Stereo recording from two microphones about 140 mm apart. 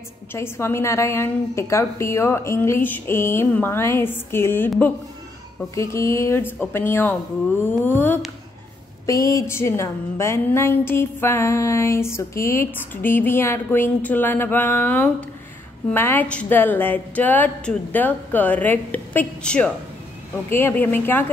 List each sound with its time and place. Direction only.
0.3 s a woman's voice: 20° left (ahead or behind)
5.8 s a woman's voice: 20° left (ahead or behind)